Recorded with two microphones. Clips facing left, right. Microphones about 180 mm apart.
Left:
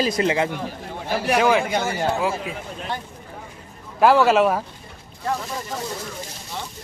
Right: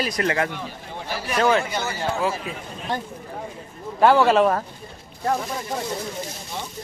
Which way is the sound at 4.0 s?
Centre (ahead or behind).